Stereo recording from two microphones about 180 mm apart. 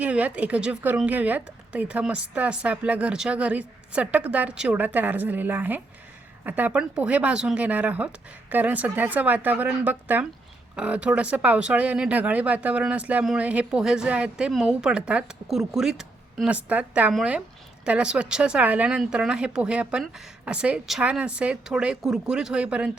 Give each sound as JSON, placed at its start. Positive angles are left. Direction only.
{"t": 0.0, "sound": "speech", "side_deg": -10}